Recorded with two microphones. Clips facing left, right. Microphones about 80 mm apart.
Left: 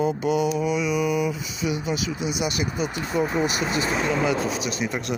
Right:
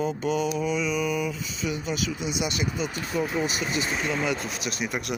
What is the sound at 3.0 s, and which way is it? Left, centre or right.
Speech, left.